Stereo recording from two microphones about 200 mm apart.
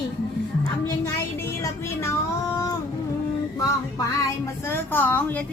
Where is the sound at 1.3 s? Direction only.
15° left (ahead or behind).